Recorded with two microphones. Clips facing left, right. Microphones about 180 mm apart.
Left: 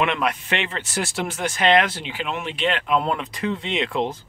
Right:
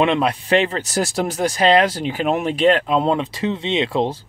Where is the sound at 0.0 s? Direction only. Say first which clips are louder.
Right 5 dB; 30° right (ahead or behind).